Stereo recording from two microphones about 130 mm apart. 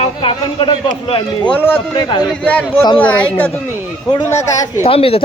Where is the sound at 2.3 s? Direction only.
10° left (ahead or behind).